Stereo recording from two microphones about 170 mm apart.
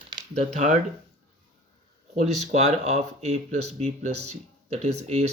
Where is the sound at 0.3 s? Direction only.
45° right (ahead or behind).